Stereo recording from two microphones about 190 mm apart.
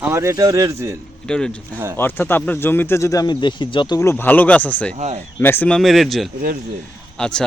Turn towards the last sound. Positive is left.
turn(degrees=5)  # may be behind; listen again after turning